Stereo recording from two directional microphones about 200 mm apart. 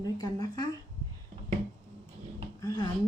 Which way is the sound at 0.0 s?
20° left (ahead or behind).